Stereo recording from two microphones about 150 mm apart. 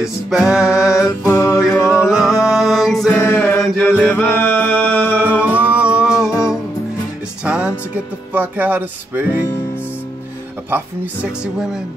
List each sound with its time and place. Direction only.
0.0 s music: 5° right (ahead or behind)
1.0 s music: 20° left (ahead or behind)
1.9 s music: 5° right (ahead or behind)
3.2 s mantra: 15° left (ahead or behind)
3.8 s music: 10° left (ahead or behind)
5.4 s music: 10° right (ahead or behind)
7.4 s music: 10° right (ahead or behind)